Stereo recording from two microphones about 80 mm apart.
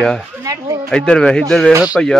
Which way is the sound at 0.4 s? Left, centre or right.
Right.